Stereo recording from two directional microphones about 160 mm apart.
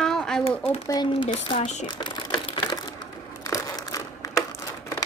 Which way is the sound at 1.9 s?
30° left (ahead or behind).